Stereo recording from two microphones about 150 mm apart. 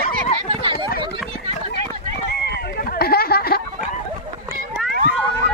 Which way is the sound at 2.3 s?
90° left.